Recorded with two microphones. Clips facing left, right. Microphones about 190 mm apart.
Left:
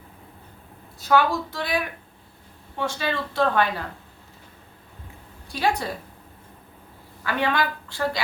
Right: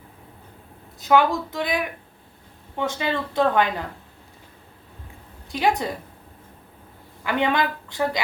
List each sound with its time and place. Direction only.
0.9 s speech: 20° right (ahead or behind)
5.5 s a woman's voice: 20° right (ahead or behind)
7.3 s speech: 20° right (ahead or behind)